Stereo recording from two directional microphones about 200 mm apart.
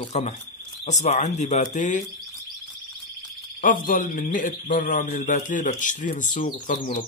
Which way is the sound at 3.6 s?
40° left (ahead or behind).